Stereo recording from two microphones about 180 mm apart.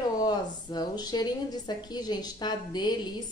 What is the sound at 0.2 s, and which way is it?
A woman's voice, 20° left (ahead or behind).